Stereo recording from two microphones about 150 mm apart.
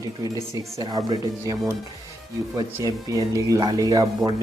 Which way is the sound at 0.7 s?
25° right (ahead or behind).